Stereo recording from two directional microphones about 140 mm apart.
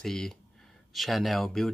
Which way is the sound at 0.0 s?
5° left (ahead or behind).